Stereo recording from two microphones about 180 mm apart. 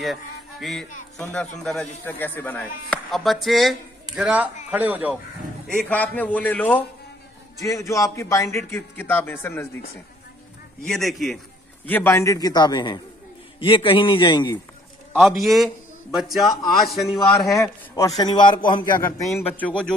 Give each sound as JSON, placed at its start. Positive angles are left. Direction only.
{"t": 0.0, "sound": "a man's voice", "side_deg": 0}
{"t": 5.8, "sound": "a man's voice", "side_deg": 10}
{"t": 10.9, "sound": "speech", "side_deg": 0}
{"t": 11.8, "sound": "a man's voice", "side_deg": 10}
{"t": 15.1, "sound": "speech", "side_deg": 0}
{"t": 17.5, "sound": "a man's voice", "side_deg": 15}
{"t": 19.6, "sound": "a man's voice", "side_deg": 5}